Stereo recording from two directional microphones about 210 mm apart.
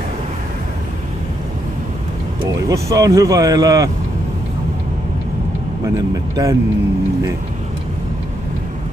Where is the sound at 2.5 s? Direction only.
15° right (ahead or behind).